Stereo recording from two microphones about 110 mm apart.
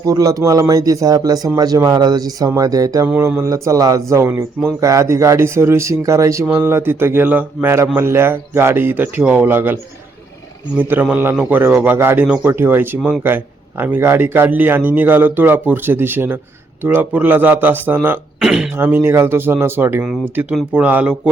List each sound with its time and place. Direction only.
0.0 s speech: 35° right (ahead or behind)
10.8 s a man's voice: 15° right (ahead or behind)
13.0 s a man's voice: 5° right (ahead or behind)
13.2 s speech: 20° right (ahead or behind)
18.3 s throat clearing: 5° right (ahead or behind)
18.8 s a man's voice: 20° right (ahead or behind)